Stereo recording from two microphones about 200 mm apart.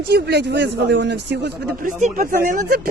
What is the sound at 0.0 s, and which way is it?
Speech, 55° right (ahead or behind).